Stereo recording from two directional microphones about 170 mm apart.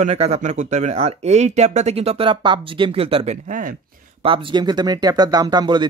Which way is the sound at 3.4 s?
55° right (ahead or behind).